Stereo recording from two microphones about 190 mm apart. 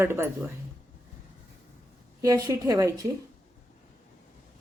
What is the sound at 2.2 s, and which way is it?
Speech, 20° right (ahead or behind).